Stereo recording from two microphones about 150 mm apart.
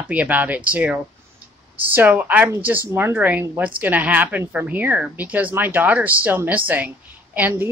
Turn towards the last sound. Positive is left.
turn(degrees=-10)  # may be behind; listen again after turning